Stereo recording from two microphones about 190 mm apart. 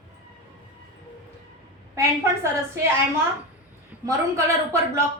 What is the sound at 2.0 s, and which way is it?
Speech, 15° right (ahead or behind).